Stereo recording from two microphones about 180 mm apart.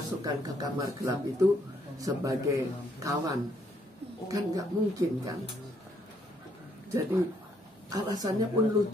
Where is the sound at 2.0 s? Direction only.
20° right (ahead or behind).